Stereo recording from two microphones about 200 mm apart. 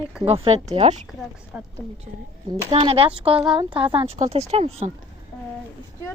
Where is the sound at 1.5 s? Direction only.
5° right (ahead or behind).